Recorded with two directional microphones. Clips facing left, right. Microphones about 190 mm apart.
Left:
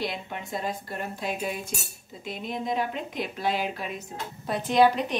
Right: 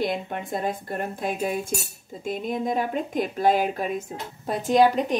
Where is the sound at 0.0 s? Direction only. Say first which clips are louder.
Right 6 dB; 50° right (ahead or behind).